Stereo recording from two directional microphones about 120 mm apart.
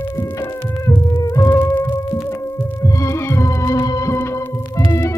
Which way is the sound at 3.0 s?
25° left (ahead or behind).